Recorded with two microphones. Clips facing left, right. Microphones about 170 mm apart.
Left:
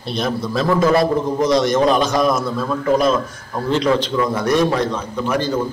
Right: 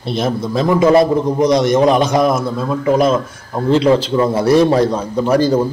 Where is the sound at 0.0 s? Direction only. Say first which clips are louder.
Right 3 dB; 20° right (ahead or behind).